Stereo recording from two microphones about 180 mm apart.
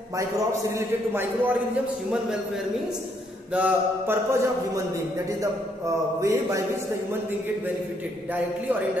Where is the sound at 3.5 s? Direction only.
10° right (ahead or behind).